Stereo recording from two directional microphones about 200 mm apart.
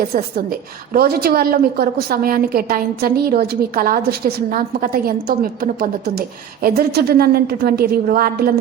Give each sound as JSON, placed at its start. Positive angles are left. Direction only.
{"t": 0.1, "sound": "a woman's voice", "side_deg": -40}